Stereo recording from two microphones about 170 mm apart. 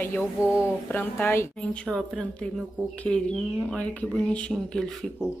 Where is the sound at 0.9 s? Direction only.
10° left (ahead or behind).